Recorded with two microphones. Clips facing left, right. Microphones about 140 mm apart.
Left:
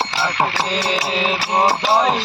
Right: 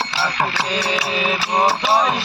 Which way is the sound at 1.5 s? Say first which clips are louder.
Left 1 dB; 25° left (ahead or behind).